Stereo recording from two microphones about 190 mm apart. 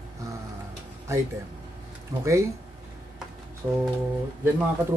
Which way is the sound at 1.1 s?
15° right (ahead or behind).